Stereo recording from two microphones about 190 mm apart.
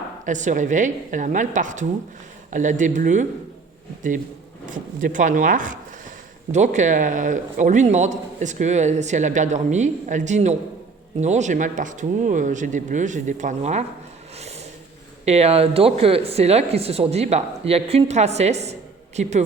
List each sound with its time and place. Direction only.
0.3 s speech: 40° right (ahead or behind)
5.0 s speech: 45° right (ahead or behind)
15.2 s speech: 35° right (ahead or behind)